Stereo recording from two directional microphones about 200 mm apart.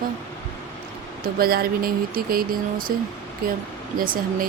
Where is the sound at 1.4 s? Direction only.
50° right (ahead or behind).